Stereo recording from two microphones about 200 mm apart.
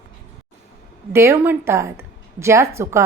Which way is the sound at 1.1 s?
15° right (ahead or behind).